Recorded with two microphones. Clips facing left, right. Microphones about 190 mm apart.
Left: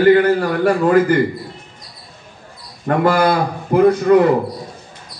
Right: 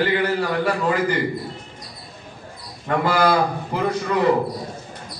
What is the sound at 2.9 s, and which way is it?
A man's voice, 55° left (ahead or behind).